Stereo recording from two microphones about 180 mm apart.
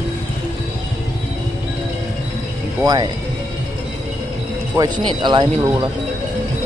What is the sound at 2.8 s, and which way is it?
Speech, 20° right (ahead or behind).